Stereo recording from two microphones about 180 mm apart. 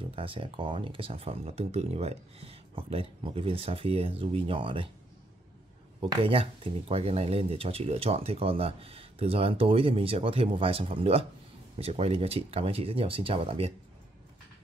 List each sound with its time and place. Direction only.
0.1 s speech: 30° right (ahead or behind)
5.9 s speech: 30° right (ahead or behind)